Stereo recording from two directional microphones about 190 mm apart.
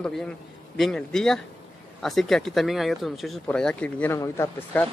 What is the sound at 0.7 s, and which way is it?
Speech, centre (ahead or behind).